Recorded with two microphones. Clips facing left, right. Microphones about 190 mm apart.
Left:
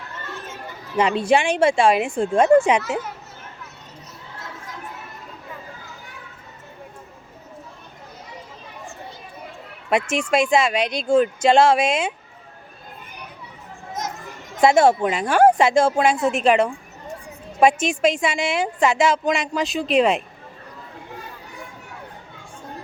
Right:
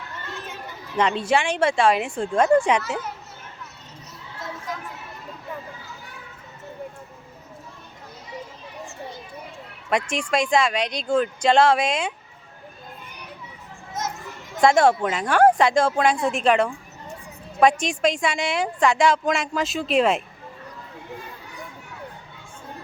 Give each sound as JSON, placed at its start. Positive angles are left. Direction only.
{"t": 0.9, "sound": "speech", "side_deg": 10}
{"t": 2.1, "sound": "a woman's voice", "side_deg": 25}
{"t": 2.6, "sound": "speech", "side_deg": 10}
{"t": 9.9, "sound": "speech", "side_deg": 5}
{"t": 14.6, "sound": "a woman's voice", "side_deg": 5}